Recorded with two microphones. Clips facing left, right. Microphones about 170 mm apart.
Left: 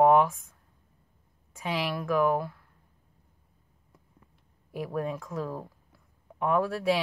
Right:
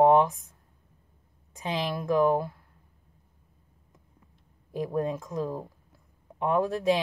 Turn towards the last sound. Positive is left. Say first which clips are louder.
# right 1 dB
turn(degrees=-20)  # may be behind; listen again after turning